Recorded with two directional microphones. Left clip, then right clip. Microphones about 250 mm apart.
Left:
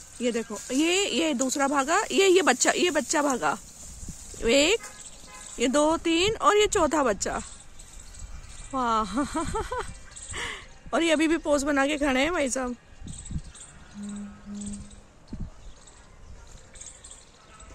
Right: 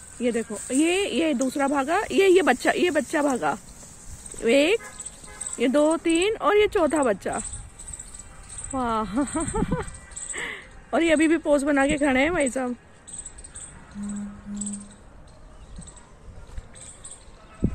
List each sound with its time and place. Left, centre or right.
0.2 s speech: centre
8.7 s speech: centre